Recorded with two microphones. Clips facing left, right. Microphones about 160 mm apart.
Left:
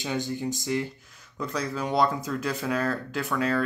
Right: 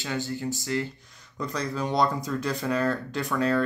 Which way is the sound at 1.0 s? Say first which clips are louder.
Even; 5° left (ahead or behind).